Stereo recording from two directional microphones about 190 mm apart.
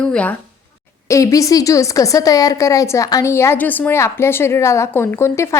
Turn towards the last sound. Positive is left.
turn(degrees=15)  # may be behind; listen again after turning